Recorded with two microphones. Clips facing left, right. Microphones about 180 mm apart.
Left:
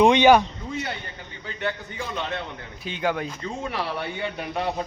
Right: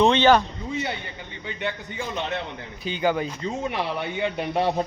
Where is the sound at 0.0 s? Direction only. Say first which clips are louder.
Left 2 dB; 15° left (ahead or behind).